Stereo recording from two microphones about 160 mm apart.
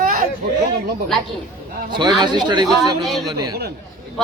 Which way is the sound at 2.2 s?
25° right (ahead or behind).